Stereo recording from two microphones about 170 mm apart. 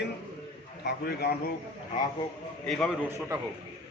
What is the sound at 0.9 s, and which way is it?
Speech, 70° left (ahead or behind).